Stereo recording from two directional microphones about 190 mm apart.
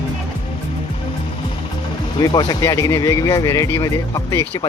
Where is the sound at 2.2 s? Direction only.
20° left (ahead or behind).